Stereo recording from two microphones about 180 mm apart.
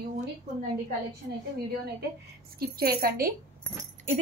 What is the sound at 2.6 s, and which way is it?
Speech, 55° right (ahead or behind).